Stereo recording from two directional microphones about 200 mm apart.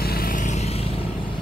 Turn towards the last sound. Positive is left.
turn(degrees=30)  # may be behind; listen again after turning